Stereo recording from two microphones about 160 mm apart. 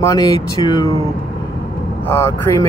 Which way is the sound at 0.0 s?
20° left (ahead or behind).